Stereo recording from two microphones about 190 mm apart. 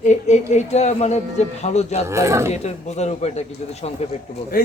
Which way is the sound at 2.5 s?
35° left (ahead or behind).